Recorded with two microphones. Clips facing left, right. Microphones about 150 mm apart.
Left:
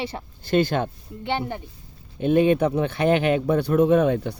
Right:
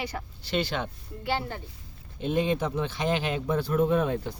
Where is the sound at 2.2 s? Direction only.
60° left (ahead or behind).